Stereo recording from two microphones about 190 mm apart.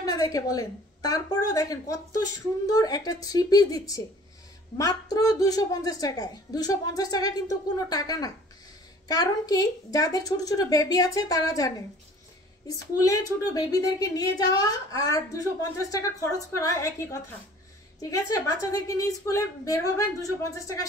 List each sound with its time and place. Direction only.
0.0 s a woman's voice: 20° left (ahead or behind)